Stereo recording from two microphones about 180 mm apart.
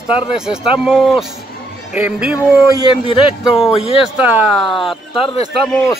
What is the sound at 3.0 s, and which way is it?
Speech, 30° left (ahead or behind).